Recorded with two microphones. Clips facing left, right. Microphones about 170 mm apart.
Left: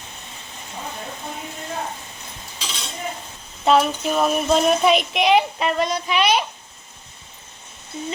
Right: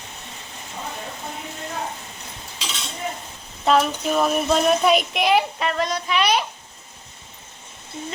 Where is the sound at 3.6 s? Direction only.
Centre (ahead or behind).